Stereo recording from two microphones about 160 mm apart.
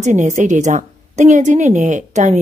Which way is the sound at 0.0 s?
45° right (ahead or behind).